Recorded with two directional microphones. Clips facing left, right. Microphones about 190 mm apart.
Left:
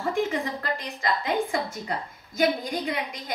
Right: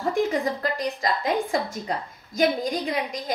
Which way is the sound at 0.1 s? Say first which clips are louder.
Right 4 dB; 40° right (ahead or behind).